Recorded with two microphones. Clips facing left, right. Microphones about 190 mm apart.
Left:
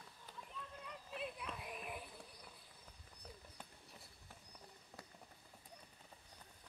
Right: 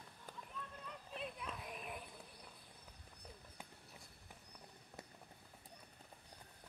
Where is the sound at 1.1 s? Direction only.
5° left (ahead or behind).